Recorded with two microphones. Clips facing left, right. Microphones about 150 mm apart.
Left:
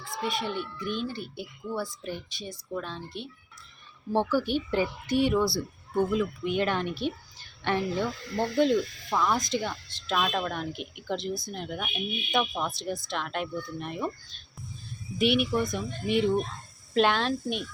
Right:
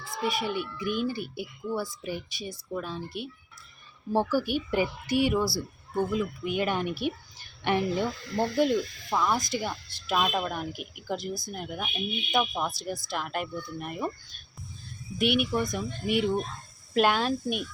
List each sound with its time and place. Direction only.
0.0 s speech: 5° right (ahead or behind)
15.2 s speech: centre (ahead or behind)